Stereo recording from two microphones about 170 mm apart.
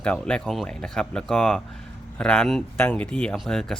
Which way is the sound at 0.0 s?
5° left (ahead or behind).